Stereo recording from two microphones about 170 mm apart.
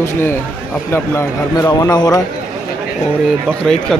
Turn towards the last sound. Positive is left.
turn(degrees=5)  # may be behind; listen again after turning